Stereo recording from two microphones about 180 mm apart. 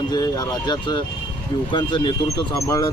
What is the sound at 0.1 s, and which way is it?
Speech, 20° left (ahead or behind).